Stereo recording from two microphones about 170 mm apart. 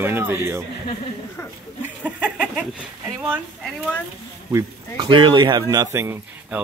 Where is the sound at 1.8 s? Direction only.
5° right (ahead or behind).